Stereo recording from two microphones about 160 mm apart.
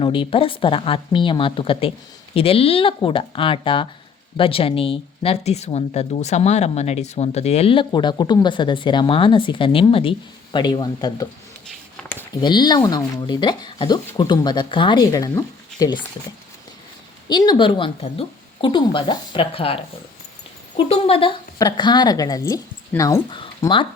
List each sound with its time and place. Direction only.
0.0 s speech: 35° left (ahead or behind)
12.3 s speech: 25° left (ahead or behind)
17.2 s speech: 25° left (ahead or behind)